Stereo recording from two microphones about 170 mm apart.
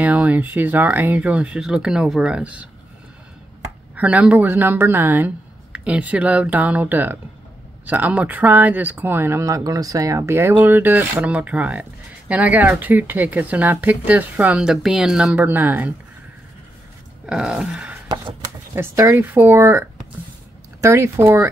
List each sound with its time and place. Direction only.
0.0 s speech: 10° right (ahead or behind)
3.9 s speech: 10° right (ahead or behind)
17.3 s speech: 5° right (ahead or behind)
18.0 s a sound: 30° right (ahead or behind)
18.8 s speech: 15° right (ahead or behind)
20.8 s speech: 15° right (ahead or behind)